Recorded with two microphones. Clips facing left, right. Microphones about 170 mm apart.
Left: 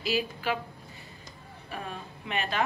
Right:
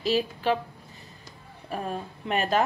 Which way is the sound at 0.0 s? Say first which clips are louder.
Right 5 dB; 35° right (ahead or behind).